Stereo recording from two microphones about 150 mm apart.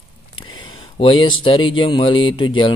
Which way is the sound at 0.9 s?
35° left (ahead or behind).